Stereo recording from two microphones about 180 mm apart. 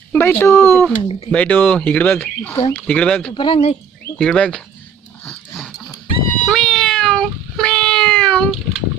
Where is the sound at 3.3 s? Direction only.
30° left (ahead or behind).